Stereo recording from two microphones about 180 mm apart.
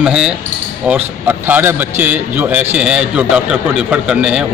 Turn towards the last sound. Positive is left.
turn(degrees=-5)  # may be behind; listen again after turning